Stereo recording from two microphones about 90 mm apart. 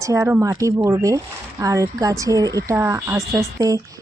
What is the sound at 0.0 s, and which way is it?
Speech, 35° right (ahead or behind).